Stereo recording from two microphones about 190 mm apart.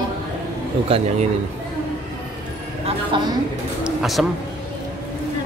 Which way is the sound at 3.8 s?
Centre (ahead or behind).